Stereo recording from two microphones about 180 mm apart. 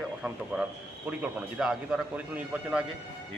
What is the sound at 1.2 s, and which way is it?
A man's voice, 5° right (ahead or behind).